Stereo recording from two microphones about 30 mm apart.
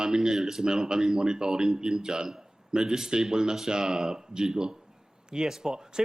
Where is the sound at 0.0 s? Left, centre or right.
Right.